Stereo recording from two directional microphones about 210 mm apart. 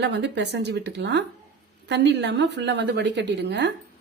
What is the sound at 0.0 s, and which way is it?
A woman's voice, 55° right (ahead or behind).